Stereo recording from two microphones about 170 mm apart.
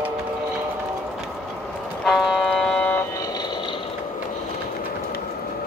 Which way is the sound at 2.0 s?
Centre (ahead or behind).